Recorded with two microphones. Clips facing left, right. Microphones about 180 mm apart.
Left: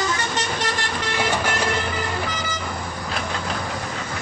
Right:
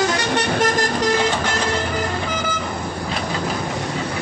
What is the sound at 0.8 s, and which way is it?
Vehicle, 40° right (ahead or behind).